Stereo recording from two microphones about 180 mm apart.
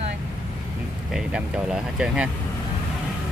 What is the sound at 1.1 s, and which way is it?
Speech, 5° right (ahead or behind).